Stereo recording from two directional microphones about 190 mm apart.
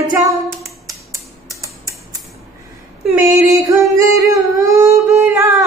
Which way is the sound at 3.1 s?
15° right (ahead or behind).